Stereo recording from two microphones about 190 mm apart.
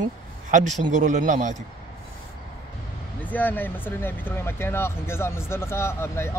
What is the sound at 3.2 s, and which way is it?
Speech, 10° left (ahead or behind).